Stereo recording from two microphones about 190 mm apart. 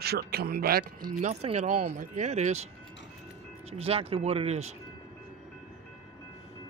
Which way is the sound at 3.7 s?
30° right (ahead or behind).